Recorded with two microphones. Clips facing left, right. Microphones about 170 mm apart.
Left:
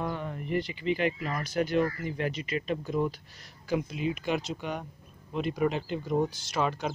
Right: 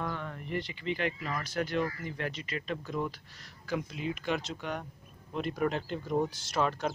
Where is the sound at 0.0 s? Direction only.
20° left (ahead or behind).